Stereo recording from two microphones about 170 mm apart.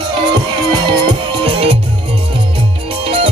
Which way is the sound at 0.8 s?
30° right (ahead or behind).